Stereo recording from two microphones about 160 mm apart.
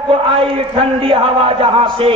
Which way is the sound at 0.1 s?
35° right (ahead or behind).